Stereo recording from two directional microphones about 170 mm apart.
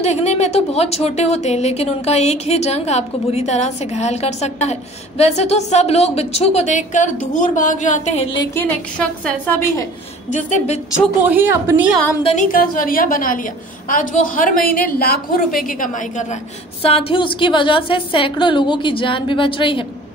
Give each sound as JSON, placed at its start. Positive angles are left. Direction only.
{"t": 0.0, "sound": "a woman's voice", "side_deg": 40}
{"t": 8.5, "sound": "a woman's voice", "side_deg": 10}
{"t": 10.3, "sound": "a woman's voice", "side_deg": 45}
{"t": 11.1, "sound": "a woman's voice", "side_deg": -10}
{"t": 12.2, "sound": "a woman's voice", "side_deg": 35}
{"t": 12.5, "sound": "a woman's voice", "side_deg": 60}
{"t": 16.8, "sound": "a woman's voice", "side_deg": 30}